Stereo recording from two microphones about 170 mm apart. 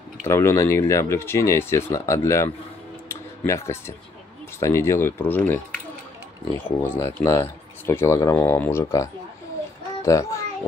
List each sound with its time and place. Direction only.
0.3 s speech: 15° left (ahead or behind)
3.1 s tick-tock: 15° left (ahead or behind)
4.6 s speech: 15° left (ahead or behind)
6.6 s a child's voice: 10° left (ahead or behind)